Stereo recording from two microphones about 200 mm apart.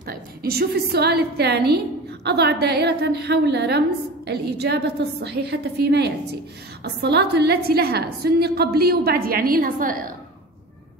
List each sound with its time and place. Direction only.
0.0 s a woman's voice: 50° right (ahead or behind)